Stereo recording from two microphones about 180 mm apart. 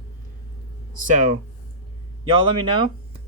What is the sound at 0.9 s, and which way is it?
Speech, 45° right (ahead or behind).